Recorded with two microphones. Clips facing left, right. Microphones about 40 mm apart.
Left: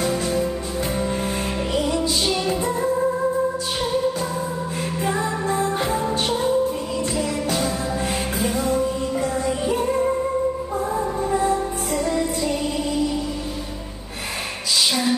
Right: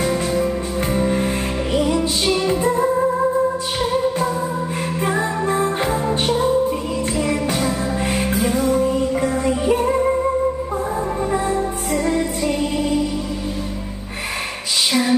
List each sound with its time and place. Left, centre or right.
0.2 s music: right
5.0 s music: right
6.0 s music: centre
7.2 s music: right
11.9 s music: right
14.9 s a sound: right